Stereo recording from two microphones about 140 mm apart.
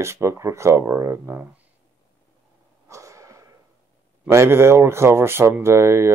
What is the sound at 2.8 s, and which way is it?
Wheeze, 20° right (ahead or behind).